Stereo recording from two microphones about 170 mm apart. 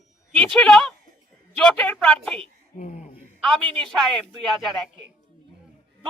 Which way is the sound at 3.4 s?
5° left (ahead or behind).